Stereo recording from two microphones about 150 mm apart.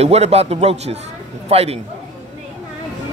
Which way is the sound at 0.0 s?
45° right (ahead or behind).